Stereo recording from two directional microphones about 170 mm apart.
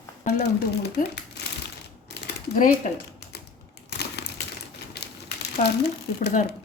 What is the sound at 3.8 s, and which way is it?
Crumpling, 75° left (ahead or behind).